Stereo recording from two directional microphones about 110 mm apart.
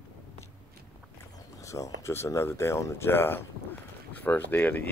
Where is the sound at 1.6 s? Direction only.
30° left (ahead or behind).